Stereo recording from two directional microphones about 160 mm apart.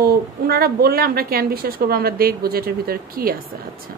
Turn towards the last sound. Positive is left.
turn(degrees=-65)  # may be behind; listen again after turning